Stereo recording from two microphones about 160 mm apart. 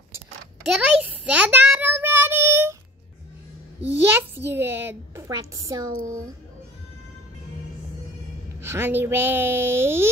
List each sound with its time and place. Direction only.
0.7 s child singing: 5° right (ahead or behind)
4.0 s a child's voice: 15° right (ahead or behind)
8.5 s speech: 15° right (ahead or behind)